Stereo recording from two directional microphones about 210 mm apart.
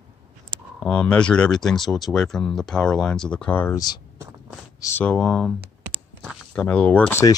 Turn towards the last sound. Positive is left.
turn(degrees=10)  # may be behind; listen again after turning